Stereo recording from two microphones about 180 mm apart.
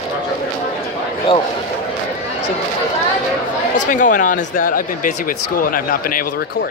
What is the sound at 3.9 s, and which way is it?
Speech, 45° left (ahead or behind).